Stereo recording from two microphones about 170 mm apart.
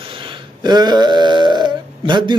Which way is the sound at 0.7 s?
25° right (ahead or behind).